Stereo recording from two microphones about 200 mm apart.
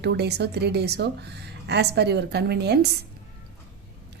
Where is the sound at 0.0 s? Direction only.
55° right (ahead or behind).